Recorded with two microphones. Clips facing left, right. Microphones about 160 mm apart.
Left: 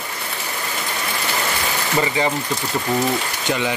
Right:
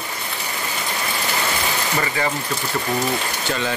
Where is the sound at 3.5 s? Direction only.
15° left (ahead or behind).